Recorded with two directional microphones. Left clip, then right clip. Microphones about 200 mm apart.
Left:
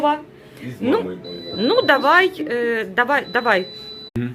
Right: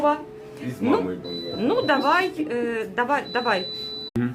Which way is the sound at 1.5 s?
20° left (ahead or behind).